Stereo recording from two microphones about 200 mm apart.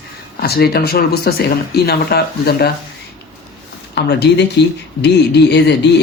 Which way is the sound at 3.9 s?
55° left (ahead or behind).